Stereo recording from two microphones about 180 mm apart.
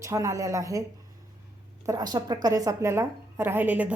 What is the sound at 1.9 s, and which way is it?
A woman's voice, 20° right (ahead or behind).